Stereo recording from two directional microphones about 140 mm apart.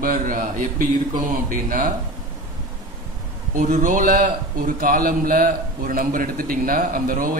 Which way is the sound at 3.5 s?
70° right (ahead or behind).